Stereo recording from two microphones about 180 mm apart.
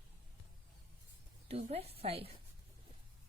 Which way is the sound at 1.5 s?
35° right (ahead or behind).